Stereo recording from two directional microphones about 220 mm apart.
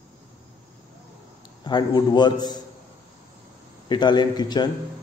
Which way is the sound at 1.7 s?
20° left (ahead or behind).